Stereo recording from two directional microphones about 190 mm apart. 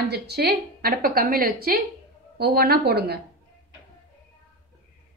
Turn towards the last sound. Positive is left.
turn(degrees=-55)  # may be behind; listen again after turning